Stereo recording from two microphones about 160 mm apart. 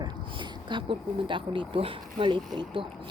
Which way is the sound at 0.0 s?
30° right (ahead or behind).